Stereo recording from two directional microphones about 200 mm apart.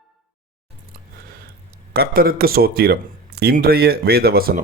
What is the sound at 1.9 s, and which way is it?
Speech, 50° right (ahead or behind).